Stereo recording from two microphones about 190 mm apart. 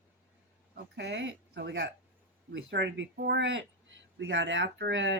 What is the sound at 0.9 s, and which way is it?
Speech, 70° right (ahead or behind).